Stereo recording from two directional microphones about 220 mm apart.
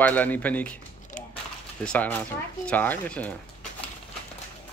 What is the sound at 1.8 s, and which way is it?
Speech, 5° left (ahead or behind).